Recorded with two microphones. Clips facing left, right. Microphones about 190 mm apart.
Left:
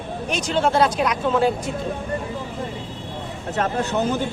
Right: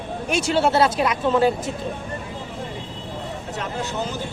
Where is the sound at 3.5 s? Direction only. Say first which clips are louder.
Left 7 dB; 65° left (ahead or behind).